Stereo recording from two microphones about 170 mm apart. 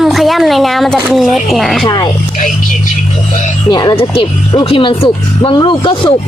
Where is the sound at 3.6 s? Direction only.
25° left (ahead or behind).